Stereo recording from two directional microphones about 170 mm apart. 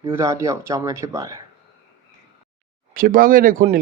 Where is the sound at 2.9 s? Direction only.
55° right (ahead or behind).